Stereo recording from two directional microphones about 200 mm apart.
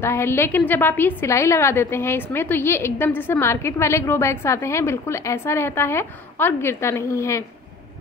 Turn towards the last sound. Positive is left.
turn(degrees=15)  # may be behind; listen again after turning